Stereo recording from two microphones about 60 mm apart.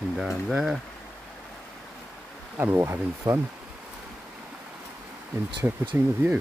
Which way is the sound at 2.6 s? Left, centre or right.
Right.